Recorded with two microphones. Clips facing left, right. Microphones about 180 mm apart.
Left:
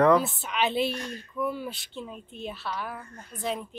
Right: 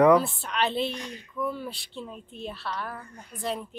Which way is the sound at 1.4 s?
5° left (ahead or behind).